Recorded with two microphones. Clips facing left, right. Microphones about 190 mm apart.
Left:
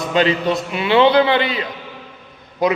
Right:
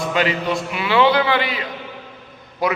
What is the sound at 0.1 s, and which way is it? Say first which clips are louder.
A man's voice: left 5 dB; 25° left (ahead or behind).